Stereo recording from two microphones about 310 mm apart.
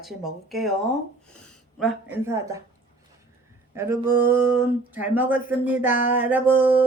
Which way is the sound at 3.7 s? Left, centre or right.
Centre.